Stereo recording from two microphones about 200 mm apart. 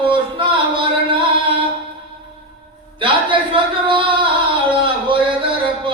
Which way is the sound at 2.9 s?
25° right (ahead or behind).